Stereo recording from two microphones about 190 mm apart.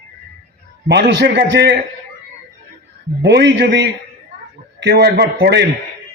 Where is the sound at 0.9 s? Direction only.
60° right (ahead or behind).